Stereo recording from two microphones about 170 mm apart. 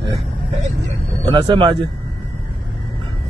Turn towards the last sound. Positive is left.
turn(degrees=-30)  # may be behind; listen again after turning